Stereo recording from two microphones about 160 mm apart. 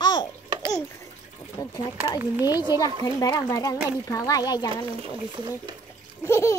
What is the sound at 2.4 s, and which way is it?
Speech, 25° left (ahead or behind).